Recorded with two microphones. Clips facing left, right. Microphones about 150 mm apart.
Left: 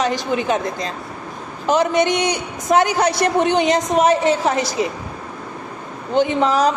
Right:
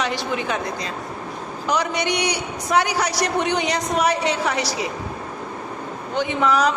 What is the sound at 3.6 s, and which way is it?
Speech, 20° left (ahead or behind).